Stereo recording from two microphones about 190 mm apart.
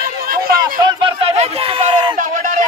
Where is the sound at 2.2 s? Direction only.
40° right (ahead or behind).